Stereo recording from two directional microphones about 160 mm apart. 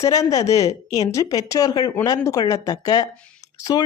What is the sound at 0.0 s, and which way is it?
Speech, 20° left (ahead or behind).